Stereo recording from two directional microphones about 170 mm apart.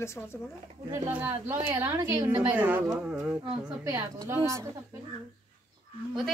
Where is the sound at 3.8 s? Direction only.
20° right (ahead or behind).